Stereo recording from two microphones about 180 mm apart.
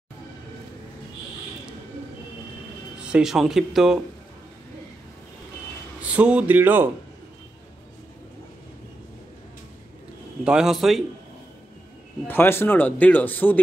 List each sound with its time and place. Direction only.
3.0 s speech: 5° right (ahead or behind)
6.1 s speech: 5° right (ahead or behind)
10.4 s speech: 5° right (ahead or behind)
12.3 s speech: 10° left (ahead or behind)